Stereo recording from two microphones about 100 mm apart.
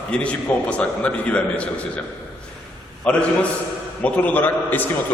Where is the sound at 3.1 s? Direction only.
10° left (ahead or behind).